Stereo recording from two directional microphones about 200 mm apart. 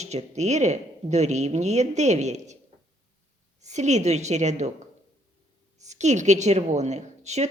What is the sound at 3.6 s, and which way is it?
A woman's voice, 35° right (ahead or behind).